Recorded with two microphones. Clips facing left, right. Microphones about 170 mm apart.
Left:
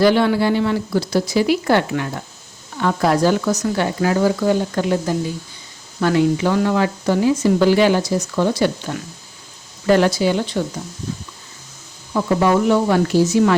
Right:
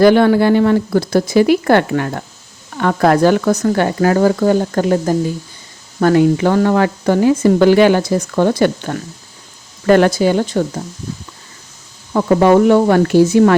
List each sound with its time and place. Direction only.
0.0 s speech: 50° right (ahead or behind)
12.1 s speech: 60° right (ahead or behind)